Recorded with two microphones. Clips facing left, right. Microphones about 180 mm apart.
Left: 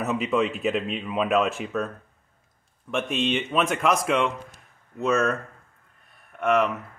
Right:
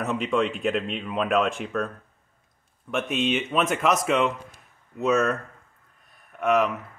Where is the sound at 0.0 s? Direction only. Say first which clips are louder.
Left 1 dB; 5° left (ahead or behind).